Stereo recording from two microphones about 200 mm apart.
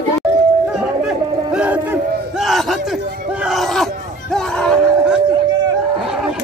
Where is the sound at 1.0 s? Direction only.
5° right (ahead or behind).